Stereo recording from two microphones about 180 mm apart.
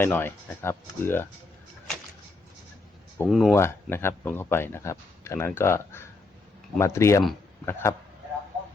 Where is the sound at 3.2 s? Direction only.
Centre (ahead or behind).